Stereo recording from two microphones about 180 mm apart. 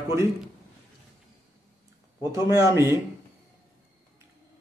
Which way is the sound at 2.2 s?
15° right (ahead or behind).